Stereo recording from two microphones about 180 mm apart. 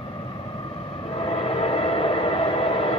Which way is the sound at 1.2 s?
30° left (ahead or behind).